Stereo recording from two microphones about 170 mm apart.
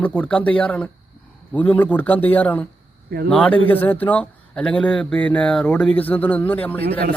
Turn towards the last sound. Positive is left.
turn(degrees=10)  # may be behind; listen again after turning